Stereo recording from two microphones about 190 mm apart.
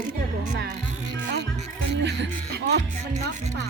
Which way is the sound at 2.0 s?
65° right (ahead or behind).